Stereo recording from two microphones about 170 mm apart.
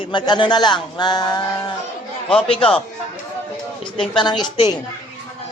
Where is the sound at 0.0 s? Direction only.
25° left (ahead or behind).